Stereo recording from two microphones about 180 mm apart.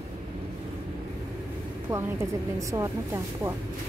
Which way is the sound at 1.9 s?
15° right (ahead or behind).